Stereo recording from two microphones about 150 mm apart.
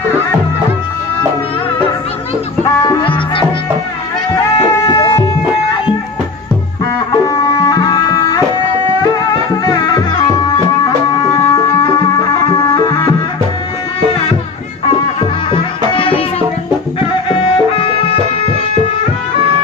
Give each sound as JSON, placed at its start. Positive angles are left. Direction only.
{"t": 3.0, "sound": "music", "side_deg": 35}
{"t": 4.6, "sound": "a sound", "side_deg": 25}
{"t": 7.1, "sound": "tabla", "side_deg": 25}
{"t": 9.7, "sound": "music", "side_deg": 25}
{"t": 15.5, "sound": "music", "side_deg": 35}
{"t": 17.3, "sound": "music", "side_deg": 40}